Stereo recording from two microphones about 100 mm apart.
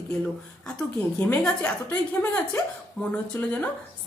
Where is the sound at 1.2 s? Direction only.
15° left (ahead or behind).